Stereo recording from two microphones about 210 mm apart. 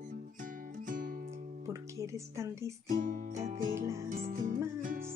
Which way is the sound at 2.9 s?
40° right (ahead or behind).